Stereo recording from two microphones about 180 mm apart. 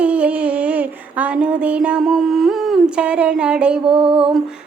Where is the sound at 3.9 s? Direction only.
30° right (ahead or behind).